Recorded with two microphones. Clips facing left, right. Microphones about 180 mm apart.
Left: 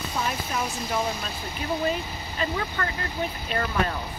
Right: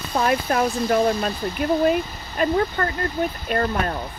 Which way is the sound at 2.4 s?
45° right (ahead or behind).